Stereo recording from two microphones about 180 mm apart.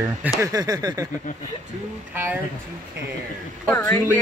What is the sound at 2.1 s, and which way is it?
Speech, 10° right (ahead or behind).